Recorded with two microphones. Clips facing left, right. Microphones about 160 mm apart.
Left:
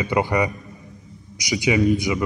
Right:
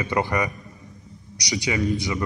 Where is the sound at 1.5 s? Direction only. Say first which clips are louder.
Left 5 dB; 20° left (ahead or behind).